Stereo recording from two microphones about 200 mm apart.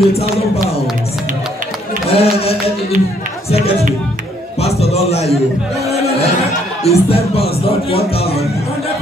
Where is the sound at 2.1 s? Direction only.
30° left (ahead or behind).